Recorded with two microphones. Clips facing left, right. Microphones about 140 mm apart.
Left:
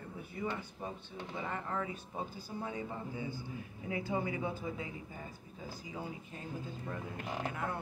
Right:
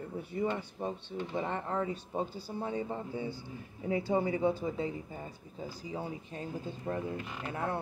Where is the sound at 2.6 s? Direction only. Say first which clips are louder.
Right 5 dB; 30° right (ahead or behind).